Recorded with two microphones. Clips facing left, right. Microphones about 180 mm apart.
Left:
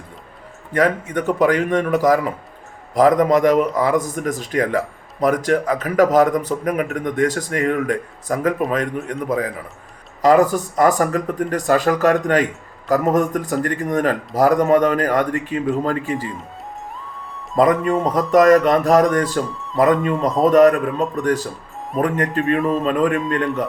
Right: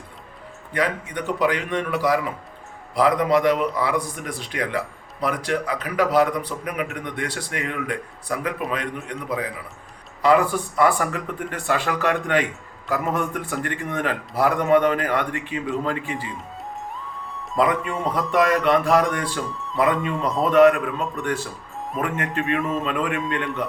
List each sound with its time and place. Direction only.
0.7 s a man's voice: 45° left (ahead or behind)
17.6 s a man's voice: 40° left (ahead or behind)
19.5 s music: centre (ahead or behind)
19.7 s a man's voice: 40° left (ahead or behind)